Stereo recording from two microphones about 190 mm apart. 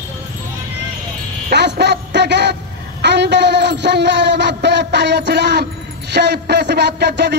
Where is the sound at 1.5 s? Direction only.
65° right (ahead or behind).